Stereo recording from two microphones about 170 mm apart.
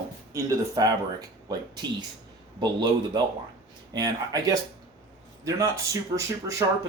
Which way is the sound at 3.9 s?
25° right (ahead or behind).